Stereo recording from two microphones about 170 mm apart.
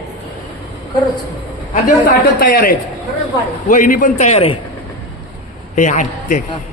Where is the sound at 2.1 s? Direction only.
55° left (ahead or behind); by 4.5 s 35° left (ahead or behind).